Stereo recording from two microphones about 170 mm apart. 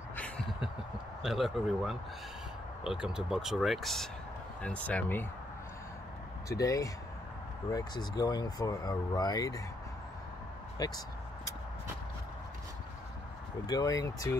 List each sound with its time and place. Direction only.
1.2 s speech: centre (ahead or behind)
6.5 s speech: 20° left (ahead or behind)
10.8 s speech: 25° left (ahead or behind)
13.7 s speech: 20° left (ahead or behind)